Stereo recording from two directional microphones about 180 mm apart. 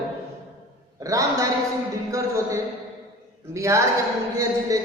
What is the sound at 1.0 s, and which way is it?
A woman's voice, 20° right (ahead or behind).